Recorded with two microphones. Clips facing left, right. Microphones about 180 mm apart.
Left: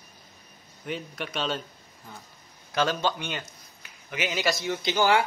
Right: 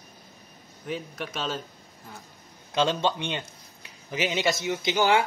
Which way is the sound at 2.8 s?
25° right (ahead or behind).